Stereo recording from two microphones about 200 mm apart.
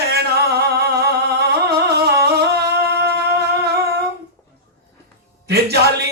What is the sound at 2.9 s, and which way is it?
Music, 55° right (ahead or behind).